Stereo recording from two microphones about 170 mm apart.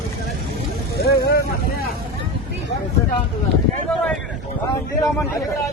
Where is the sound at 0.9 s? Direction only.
70° left (ahead or behind).